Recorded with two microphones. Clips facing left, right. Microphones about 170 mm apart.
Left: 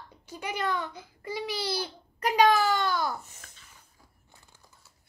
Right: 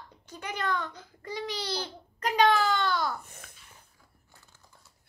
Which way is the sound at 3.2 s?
55° right (ahead or behind).